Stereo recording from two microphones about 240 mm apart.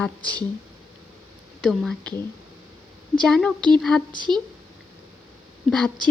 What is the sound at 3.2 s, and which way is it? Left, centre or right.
Speech, centre.